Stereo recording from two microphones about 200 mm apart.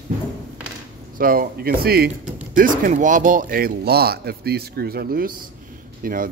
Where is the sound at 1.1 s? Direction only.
45° right (ahead or behind).